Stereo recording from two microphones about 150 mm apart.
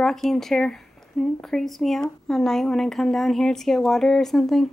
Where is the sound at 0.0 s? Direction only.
Centre (ahead or behind).